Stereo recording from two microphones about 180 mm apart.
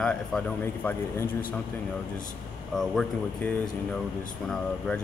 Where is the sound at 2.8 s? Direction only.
Centre (ahead or behind).